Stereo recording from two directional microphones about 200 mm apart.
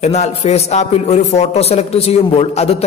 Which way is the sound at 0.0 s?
35° left (ahead or behind).